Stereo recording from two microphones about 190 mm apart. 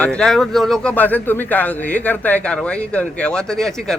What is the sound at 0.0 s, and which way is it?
A man's voice, 5° left (ahead or behind).